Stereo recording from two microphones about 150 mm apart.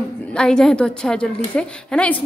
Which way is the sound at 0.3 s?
5° left (ahead or behind).